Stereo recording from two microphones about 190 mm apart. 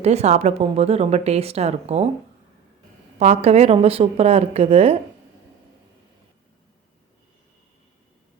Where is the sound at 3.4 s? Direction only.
35° right (ahead or behind).